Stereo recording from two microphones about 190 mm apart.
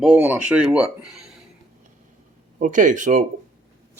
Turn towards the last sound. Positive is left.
turn(degrees=-40)  # may be behind; listen again after turning